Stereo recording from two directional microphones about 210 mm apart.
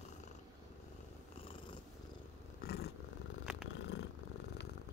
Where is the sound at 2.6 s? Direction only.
50° left (ahead or behind).